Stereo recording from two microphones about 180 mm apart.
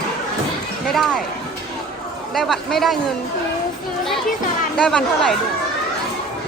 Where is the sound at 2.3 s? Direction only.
Centre (ahead or behind).